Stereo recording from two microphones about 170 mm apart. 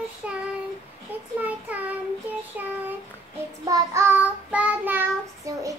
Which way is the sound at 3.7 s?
20° right (ahead or behind).